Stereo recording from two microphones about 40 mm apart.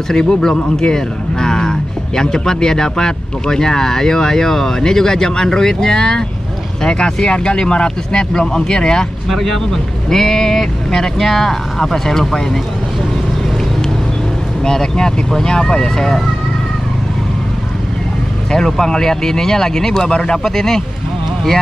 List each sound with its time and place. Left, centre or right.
0.1 s speech: centre
14.6 s speech: centre
18.5 s speech: centre